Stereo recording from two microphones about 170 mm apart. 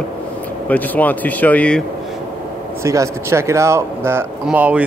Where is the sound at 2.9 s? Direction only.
15° right (ahead or behind).